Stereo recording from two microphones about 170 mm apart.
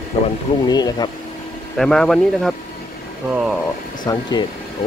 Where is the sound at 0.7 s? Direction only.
25° left (ahead or behind).